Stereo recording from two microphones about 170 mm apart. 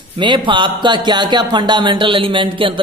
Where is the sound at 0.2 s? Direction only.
30° right (ahead or behind).